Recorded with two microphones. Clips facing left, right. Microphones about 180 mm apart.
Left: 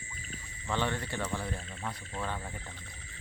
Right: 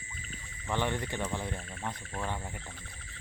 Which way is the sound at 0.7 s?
15° right (ahead or behind).